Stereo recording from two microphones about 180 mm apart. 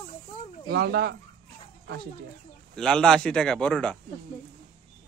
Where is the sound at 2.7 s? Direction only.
5° left (ahead or behind).